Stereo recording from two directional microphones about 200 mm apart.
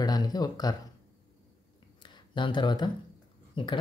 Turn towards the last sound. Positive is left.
turn(degrees=25)  # may be behind; listen again after turning